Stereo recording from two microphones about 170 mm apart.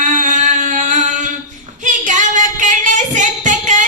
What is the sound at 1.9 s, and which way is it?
Singing, 50° right (ahead or behind).